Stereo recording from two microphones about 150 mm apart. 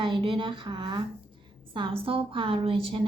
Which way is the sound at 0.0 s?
35° right (ahead or behind).